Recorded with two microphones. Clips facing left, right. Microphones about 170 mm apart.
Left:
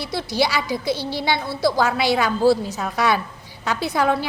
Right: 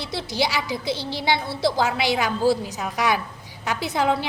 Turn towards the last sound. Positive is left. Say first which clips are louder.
# left 2 dB
turn(degrees=-20)  # may be behind; listen again after turning